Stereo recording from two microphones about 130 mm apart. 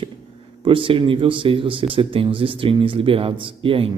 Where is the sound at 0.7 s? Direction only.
40° right (ahead or behind).